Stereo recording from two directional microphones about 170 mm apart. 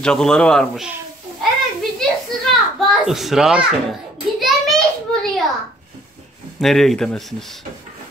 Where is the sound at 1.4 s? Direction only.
Centre (ahead or behind).